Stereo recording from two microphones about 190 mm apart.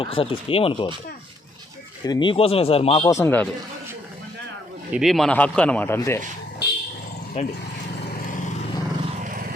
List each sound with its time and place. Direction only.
0.0 s speech: 30° left (ahead or behind)
2.0 s speech: 25° left (ahead or behind)
3.2 s a man's voice: 10° left (ahead or behind)
4.9 s a man's voice: centre (ahead or behind); by 6.1 s 15° left (ahead or behind)
6.6 s vehicle: 60° left (ahead or behind)
7.4 s speech: 35° left (ahead or behind)